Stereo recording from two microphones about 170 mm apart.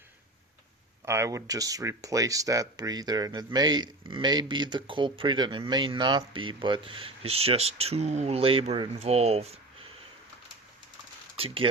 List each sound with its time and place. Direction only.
1.0 s speech: 15° right (ahead or behind); by 9.6 s 35° right (ahead or behind)
11.3 s speech: 30° right (ahead or behind)